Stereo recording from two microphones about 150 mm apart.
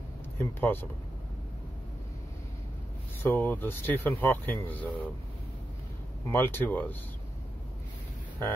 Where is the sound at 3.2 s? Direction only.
10° left (ahead or behind).